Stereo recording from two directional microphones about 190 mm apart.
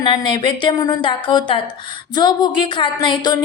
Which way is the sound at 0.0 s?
25° left (ahead or behind).